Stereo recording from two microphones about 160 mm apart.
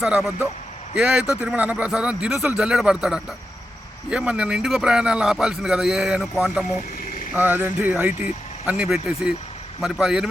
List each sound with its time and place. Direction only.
0.0 s a man's voice: centre (ahead or behind)